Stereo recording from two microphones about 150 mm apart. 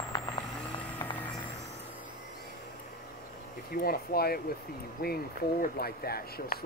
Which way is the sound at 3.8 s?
90° left.